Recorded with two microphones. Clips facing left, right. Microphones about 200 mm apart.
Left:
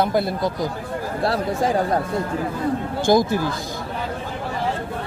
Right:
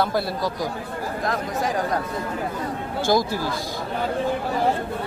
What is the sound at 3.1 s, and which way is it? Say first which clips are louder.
Speech: left 4 dB; 20° left (ahead or behind).